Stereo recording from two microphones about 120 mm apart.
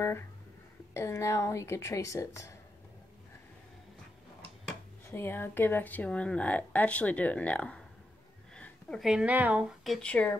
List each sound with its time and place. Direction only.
0.9 s a woman's voice: 25° left (ahead or behind)
5.0 s speech: 20° left (ahead or behind)
8.5 s a sound: 10° left (ahead or behind)
9.0 s speech: 10° right (ahead or behind)
10.0 s speech: 10° left (ahead or behind)